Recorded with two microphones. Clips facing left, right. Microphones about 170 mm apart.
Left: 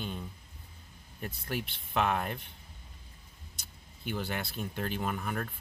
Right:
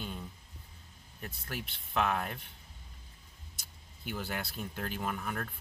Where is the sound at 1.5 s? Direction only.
Centre (ahead or behind).